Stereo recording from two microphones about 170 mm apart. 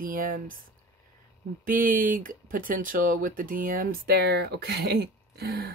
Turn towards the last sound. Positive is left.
turn(degrees=-70)  # may be behind; listen again after turning